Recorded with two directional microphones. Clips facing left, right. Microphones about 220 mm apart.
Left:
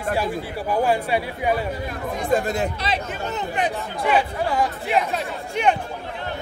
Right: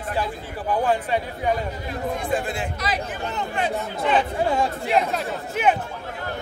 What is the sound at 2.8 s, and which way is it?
Speech, 25° left (ahead or behind).